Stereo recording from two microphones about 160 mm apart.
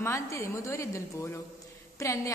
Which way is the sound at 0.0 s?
20° left (ahead or behind).